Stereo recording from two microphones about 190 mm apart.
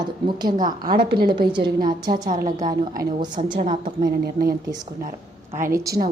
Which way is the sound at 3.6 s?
45° right (ahead or behind).